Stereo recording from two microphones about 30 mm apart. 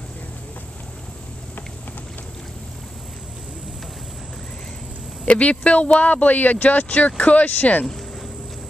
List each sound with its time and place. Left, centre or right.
5.2 s speech: left
5.9 s speech: left